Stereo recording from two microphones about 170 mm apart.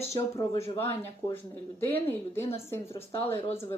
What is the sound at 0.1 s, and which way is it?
Speech, 20° left (ahead or behind).